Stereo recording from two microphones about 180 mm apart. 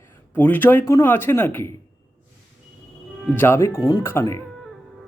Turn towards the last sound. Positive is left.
turn(degrees=15)  # may be behind; listen again after turning